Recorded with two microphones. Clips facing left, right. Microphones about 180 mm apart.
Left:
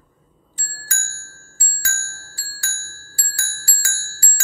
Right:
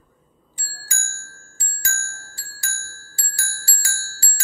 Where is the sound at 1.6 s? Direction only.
20° right (ahead or behind).